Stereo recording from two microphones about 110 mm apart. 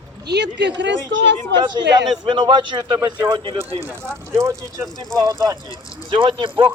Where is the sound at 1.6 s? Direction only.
45° right (ahead or behind).